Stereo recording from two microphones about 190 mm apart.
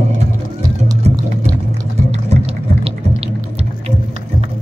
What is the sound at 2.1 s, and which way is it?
Music, 30° right (ahead or behind).